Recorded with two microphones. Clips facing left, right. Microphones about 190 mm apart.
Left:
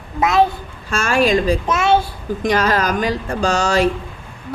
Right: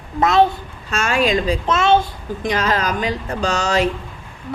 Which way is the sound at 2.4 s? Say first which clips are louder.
Left 3 dB; 40° left (ahead or behind).